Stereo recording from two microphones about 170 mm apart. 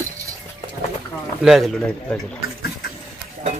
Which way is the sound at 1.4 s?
Centre (ahead or behind).